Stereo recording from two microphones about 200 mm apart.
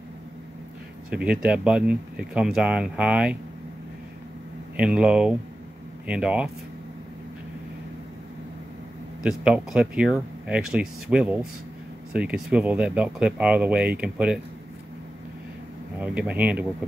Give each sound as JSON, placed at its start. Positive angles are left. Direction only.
{"t": 1.1, "sound": "speech", "side_deg": -5}
{"t": 4.7, "sound": "speech", "side_deg": -5}
{"t": 9.2, "sound": "speech", "side_deg": -5}
{"t": 16.0, "sound": "speech", "side_deg": -5}